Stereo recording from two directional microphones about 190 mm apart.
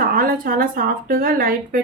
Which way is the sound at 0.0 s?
50° right (ahead or behind).